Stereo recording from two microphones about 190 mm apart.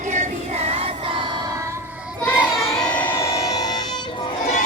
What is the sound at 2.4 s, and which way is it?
Music, centre (ahead or behind).